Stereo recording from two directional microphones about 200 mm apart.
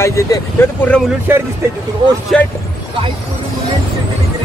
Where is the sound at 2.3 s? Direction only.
5° left (ahead or behind).